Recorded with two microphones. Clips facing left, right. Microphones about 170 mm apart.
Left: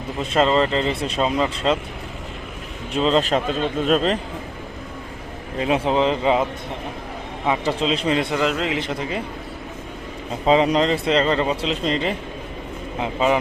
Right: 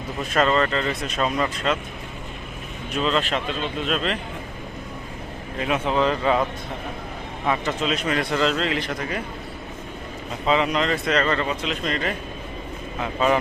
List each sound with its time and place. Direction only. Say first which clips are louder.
0.2 s speech: left 2 dB; 25° left (ahead or behind)
2.9 s a man's voice: left 5 dB; 30° left (ahead or behind)
5.5 s speech: left 3 dB; 30° left (ahead or behind)
7.6 s speech: left 3 dB; 30° left (ahead or behind)
10.4 s speech: left 5 dB; 35° left (ahead or behind)